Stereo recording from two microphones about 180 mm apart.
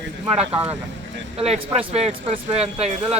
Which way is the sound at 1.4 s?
35° right (ahead or behind).